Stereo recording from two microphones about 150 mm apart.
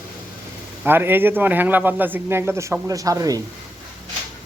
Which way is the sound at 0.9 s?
15° right (ahead or behind).